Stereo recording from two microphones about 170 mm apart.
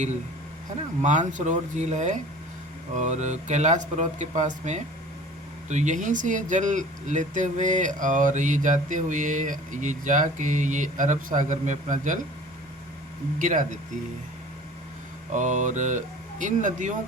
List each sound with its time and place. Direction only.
1.0 s speech: 45° right (ahead or behind)
13.4 s speech: 50° right (ahead or behind)
15.3 s speech: 45° right (ahead or behind)